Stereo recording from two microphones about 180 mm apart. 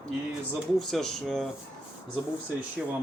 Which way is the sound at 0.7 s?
Centre (ahead or behind).